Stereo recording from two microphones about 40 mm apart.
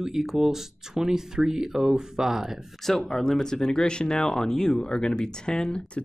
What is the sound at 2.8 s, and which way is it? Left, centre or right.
Speech, centre.